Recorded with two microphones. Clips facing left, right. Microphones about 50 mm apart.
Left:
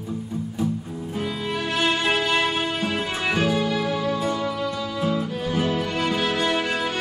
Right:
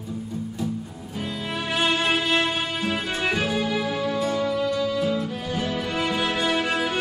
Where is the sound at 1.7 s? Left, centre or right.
Centre.